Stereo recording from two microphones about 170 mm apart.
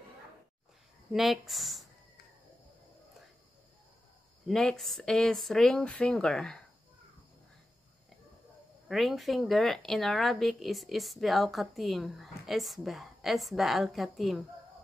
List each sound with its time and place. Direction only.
1.1 s speech: centre (ahead or behind)
4.5 s speech: centre (ahead or behind)
8.8 s speech: centre (ahead or behind)